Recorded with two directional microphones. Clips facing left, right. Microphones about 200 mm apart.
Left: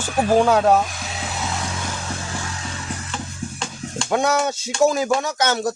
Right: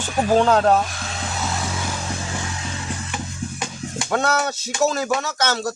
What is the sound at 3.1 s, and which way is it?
Music, 15° right (ahead or behind).